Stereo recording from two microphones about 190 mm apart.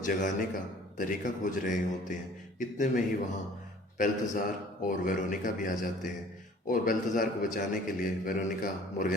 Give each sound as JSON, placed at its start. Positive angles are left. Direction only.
{"t": 0.0, "sound": "a man's voice", "side_deg": 45}